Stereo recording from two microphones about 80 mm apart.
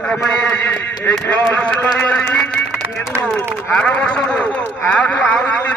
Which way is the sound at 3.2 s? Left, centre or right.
Centre.